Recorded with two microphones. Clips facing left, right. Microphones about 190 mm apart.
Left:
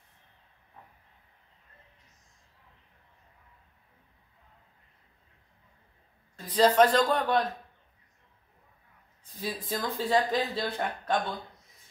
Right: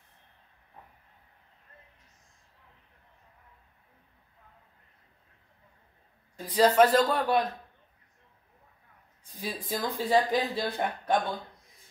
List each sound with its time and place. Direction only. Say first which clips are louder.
6.3 s speech: even; 10° right (ahead or behind)
9.3 s speech: even; 10° right (ahead or behind)